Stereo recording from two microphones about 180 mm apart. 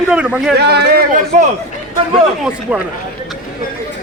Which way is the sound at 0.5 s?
65° right (ahead or behind).